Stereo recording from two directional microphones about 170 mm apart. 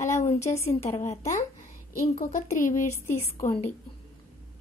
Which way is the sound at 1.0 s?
45° left (ahead or behind).